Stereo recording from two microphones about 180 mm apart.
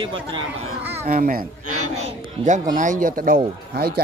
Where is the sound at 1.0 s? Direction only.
50° right (ahead or behind).